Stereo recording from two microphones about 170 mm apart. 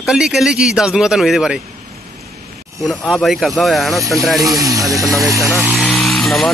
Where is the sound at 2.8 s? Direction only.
Centre (ahead or behind).